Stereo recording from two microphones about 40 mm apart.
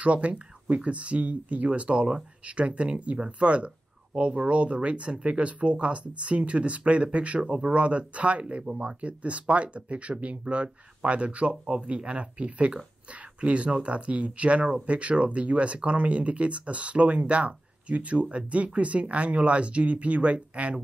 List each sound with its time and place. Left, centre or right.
0.0 s speech: right